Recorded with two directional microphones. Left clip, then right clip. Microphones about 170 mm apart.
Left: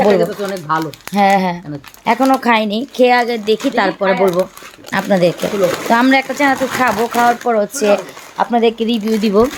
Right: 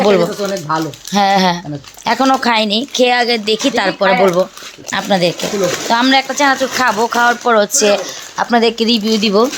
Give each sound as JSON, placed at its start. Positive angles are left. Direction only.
{"t": 0.0, "sound": "speech", "side_deg": 0}
{"t": 2.4, "sound": "a woman's voice", "side_deg": 10}
{"t": 4.9, "sound": "a woman's voice", "side_deg": 15}
{"t": 8.4, "sound": "speech", "side_deg": -10}
{"t": 9.1, "sound": "speech", "side_deg": 5}